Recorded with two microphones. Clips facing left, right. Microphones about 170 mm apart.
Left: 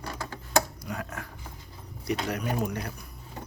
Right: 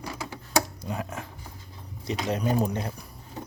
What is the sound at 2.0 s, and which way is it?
Speech, 25° right (ahead or behind).